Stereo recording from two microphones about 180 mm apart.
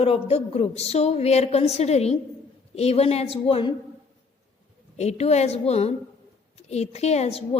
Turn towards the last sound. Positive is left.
turn(degrees=35)  # may be behind; listen again after turning